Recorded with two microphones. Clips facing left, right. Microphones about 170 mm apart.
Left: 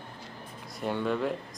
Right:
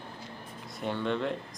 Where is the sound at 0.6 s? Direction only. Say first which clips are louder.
Left 2 dB; centre (ahead or behind).